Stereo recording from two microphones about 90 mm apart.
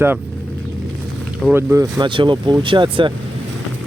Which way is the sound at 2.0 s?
65° right (ahead or behind).